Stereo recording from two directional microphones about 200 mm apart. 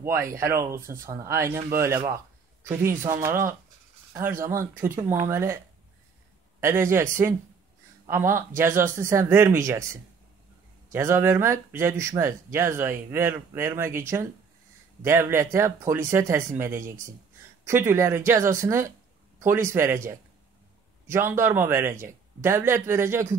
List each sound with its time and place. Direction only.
0.0 s a man's voice: 15° right (ahead or behind)
6.6 s speech: 15° right (ahead or behind)
8.1 s speech: 15° right (ahead or behind)
10.9 s speech: 15° right (ahead or behind)